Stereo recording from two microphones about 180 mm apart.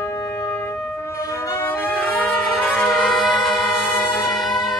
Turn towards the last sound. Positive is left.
turn(degrees=0)  # may be behind; listen again after turning